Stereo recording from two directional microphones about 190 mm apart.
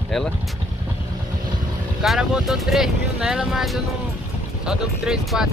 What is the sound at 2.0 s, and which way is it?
Speech, 5° right (ahead or behind).